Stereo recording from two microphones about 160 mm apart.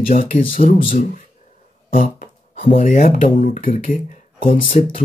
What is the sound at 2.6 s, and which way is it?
Speech, 45° left (ahead or behind).